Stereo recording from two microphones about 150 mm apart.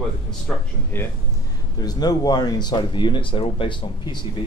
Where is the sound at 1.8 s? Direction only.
25° left (ahead or behind).